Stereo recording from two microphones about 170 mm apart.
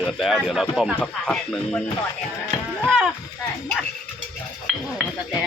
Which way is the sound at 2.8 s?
Centre (ahead or behind).